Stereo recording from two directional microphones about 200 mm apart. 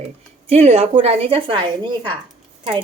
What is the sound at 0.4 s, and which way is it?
A woman's voice, 35° right (ahead or behind).